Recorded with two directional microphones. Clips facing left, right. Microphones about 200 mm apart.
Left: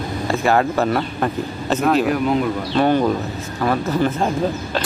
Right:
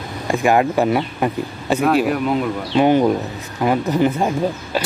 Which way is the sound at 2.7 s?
15° right (ahead or behind).